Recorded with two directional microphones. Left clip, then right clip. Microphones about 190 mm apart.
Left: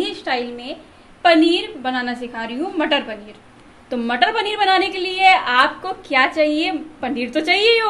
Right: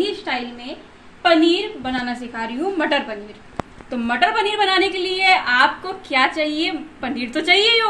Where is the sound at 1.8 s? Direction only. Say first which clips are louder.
Left 2 dB; 20° left (ahead or behind).